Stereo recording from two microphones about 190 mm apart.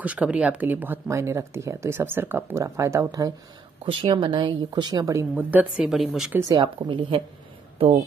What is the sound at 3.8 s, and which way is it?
Speech, 30° right (ahead or behind).